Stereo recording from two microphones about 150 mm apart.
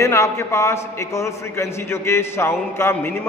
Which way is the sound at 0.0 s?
20° left (ahead or behind).